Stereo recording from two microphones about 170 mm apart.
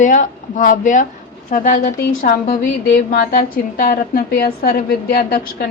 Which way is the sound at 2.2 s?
60° left (ahead or behind).